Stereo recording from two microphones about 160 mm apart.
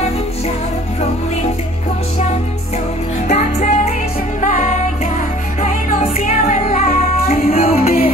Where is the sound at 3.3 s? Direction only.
40° left (ahead or behind).